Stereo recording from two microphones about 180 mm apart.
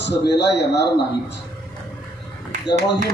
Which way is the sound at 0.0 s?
70° left (ahead or behind).